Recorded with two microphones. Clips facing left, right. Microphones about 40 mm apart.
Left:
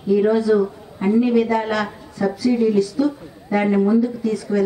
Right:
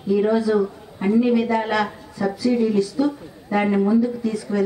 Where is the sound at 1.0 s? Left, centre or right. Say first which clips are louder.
Left 1 dB; centre.